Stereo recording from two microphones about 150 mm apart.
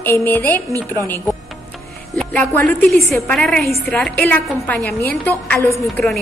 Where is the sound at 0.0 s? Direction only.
15° left (ahead or behind).